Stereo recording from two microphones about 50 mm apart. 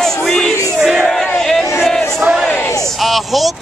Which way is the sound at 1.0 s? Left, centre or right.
Centre.